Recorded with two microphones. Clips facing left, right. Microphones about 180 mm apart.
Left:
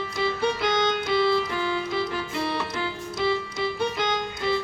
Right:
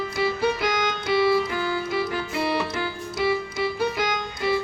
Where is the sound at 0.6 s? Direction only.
25° left (ahead or behind).